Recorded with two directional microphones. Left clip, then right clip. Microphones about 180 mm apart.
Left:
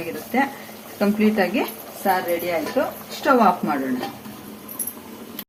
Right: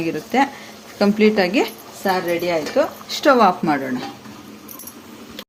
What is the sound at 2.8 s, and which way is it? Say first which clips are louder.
Speech: right 5 dB; 65° right (ahead or behind).